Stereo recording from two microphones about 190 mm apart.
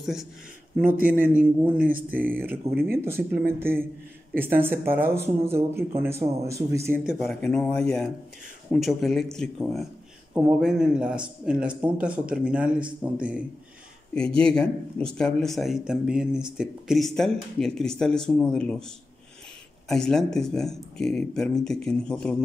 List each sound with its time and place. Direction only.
0.0 s speech: centre (ahead or behind)
0.8 s speech: 45° right (ahead or behind)
1.1 s speech: 10° right (ahead or behind)
1.8 s speech: 45° right (ahead or behind)
3.1 s speech: 10° right (ahead or behind)
6.9 s speech: centre (ahead or behind)
14.1 s speech: 5° left (ahead or behind)
19.9 s speech: 5° left (ahead or behind)